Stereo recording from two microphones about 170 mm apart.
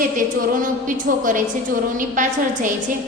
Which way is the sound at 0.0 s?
50° right (ahead or behind).